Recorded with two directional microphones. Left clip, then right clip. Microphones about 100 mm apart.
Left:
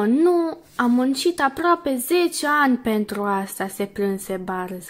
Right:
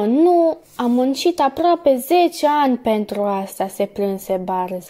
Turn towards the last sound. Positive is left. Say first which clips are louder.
# right 6 dB
turn(degrees=-25)  # may be behind; listen again after turning